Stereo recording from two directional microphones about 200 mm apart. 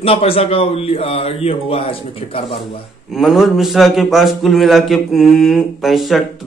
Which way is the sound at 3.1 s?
Centre (ahead or behind).